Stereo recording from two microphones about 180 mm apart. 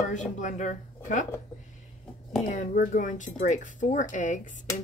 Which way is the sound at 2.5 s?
45° left (ahead or behind).